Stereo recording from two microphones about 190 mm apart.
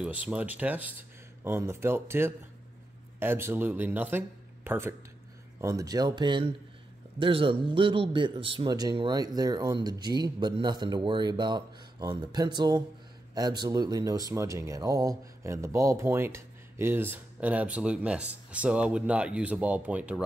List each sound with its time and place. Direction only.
0.0 s a man's voice: 5° right (ahead or behind)